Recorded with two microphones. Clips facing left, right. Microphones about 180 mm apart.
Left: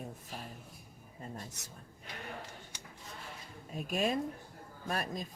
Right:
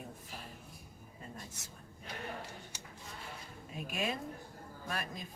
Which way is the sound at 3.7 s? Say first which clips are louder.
Left 5 dB; 40° left (ahead or behind).